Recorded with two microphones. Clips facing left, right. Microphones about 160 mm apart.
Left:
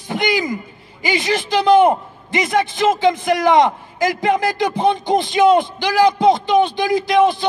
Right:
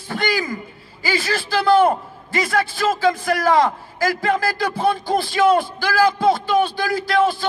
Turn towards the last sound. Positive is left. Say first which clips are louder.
# left 4 dB
turn(degrees=20)  # may be behind; listen again after turning